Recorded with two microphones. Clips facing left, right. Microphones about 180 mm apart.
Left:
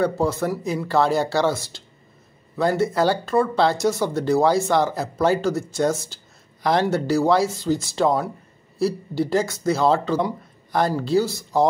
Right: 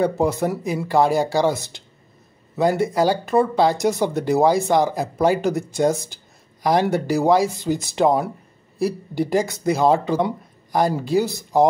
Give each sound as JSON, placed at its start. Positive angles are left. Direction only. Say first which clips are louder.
{"t": 0.0, "sound": "speech", "louder": "right 2 dB", "side_deg": -15}